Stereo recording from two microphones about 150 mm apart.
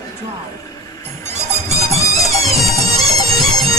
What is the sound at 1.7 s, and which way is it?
Music, 45° right (ahead or behind).